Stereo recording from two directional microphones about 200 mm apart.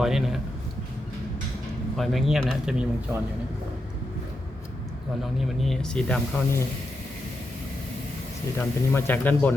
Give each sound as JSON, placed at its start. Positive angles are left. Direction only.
{"t": 0.0, "sound": "speech", "side_deg": 0}
{"t": 2.0, "sound": "speech", "side_deg": 0}
{"t": 5.2, "sound": "speech", "side_deg": 0}
{"t": 8.5, "sound": "speech", "side_deg": 10}